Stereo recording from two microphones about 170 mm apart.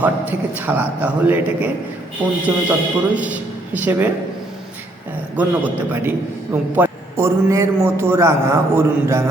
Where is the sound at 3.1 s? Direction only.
10° right (ahead or behind).